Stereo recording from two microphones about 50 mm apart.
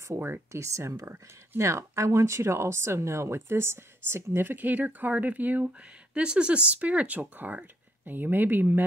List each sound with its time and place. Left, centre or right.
0.5 s speech: right
6.2 s speech: centre
7.2 s speech: right